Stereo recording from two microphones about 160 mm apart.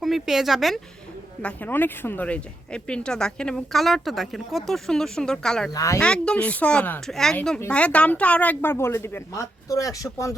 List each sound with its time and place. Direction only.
0.0 s speech: centre (ahead or behind)
1.4 s speech: 10° left (ahead or behind)
5.7 s speech: 20° left (ahead or behind)
6.0 s a woman's voice: 5° left (ahead or behind)